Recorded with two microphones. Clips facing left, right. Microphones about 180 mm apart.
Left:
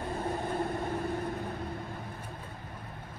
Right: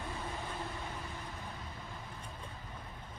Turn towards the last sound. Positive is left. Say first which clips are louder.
# left 11 dB
turn(degrees=60)  # may be behind; listen again after turning